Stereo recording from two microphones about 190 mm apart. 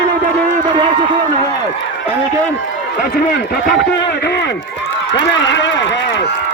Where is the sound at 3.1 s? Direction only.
45° left (ahead or behind).